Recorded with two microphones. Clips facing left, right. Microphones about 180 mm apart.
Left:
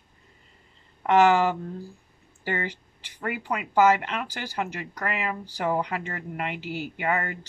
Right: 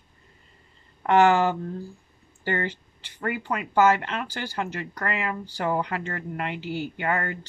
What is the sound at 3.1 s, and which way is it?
Speech, 10° left (ahead or behind).